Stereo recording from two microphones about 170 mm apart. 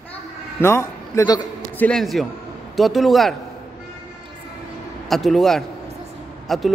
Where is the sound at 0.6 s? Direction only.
15° left (ahead or behind).